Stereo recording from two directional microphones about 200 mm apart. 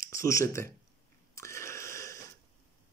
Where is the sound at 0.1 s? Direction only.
15° left (ahead or behind).